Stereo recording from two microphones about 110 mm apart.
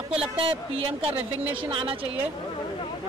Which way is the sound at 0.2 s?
55° right (ahead or behind).